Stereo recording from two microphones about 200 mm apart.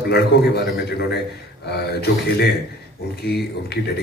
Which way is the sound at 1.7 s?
55° left (ahead or behind).